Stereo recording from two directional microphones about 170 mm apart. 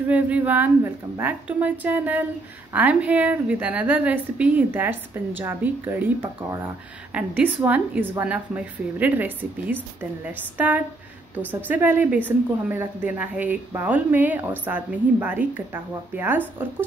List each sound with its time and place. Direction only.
0.1 s a woman's voice: 10° right (ahead or behind)